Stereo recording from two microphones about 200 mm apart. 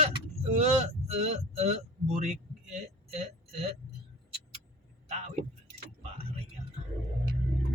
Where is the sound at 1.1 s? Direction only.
35° right (ahead or behind).